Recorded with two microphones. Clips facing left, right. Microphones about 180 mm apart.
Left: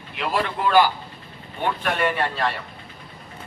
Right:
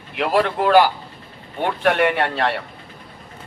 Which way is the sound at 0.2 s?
60° right (ahead or behind).